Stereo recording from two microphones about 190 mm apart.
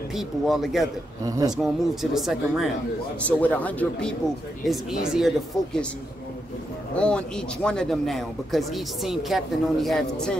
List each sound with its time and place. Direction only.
0.1 s speech: centre (ahead or behind)
1.2 s speech: 20° right (ahead or behind)
1.6 s speech: centre (ahead or behind)
4.6 s speech: centre (ahead or behind)
7.0 s speech: 5° left (ahead or behind)